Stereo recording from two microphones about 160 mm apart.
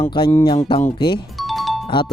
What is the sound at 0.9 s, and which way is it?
Speech, 30° left (ahead or behind).